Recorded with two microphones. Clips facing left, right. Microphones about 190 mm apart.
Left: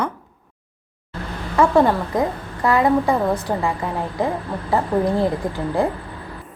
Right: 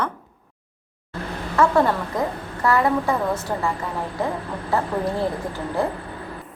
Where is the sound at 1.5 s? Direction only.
15° left (ahead or behind).